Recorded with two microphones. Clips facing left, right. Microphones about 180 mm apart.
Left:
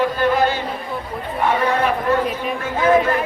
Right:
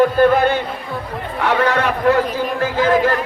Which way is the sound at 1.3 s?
80° right.